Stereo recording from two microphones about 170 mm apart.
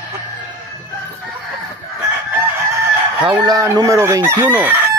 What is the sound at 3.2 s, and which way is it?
Chicken, 25° right (ahead or behind).